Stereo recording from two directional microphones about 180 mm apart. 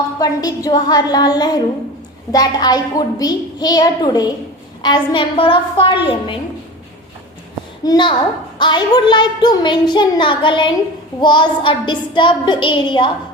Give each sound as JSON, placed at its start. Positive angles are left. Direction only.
{"t": 0.2, "sound": "a woman's voice", "side_deg": 20}
{"t": 7.9, "sound": "a woman's voice", "side_deg": 25}